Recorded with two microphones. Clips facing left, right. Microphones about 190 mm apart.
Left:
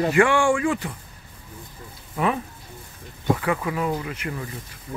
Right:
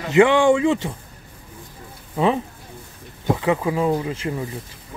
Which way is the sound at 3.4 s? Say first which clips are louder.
Right 5 dB; 25° right (ahead or behind).